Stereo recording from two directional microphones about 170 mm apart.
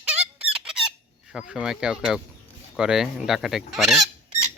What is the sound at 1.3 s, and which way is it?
Speech, 5° right (ahead or behind).